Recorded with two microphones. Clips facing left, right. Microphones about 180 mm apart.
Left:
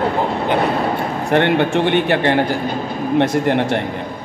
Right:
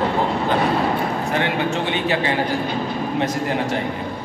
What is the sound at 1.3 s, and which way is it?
Speech, 60° left (ahead or behind).